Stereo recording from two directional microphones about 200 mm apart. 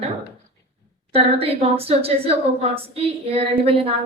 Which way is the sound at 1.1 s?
30° right (ahead or behind).